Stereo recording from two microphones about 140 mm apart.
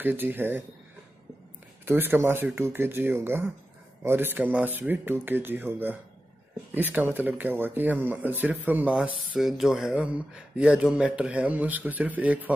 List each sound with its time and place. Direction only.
0.0 s speech: 15° right (ahead or behind)
1.9 s speech: 15° right (ahead or behind)